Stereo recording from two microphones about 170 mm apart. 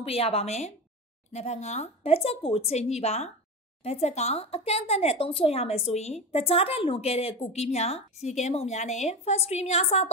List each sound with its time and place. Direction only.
0.0 s speech: 35° left (ahead or behind)